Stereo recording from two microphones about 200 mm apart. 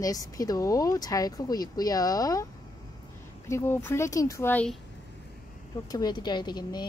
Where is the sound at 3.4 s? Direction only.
15° left (ahead or behind).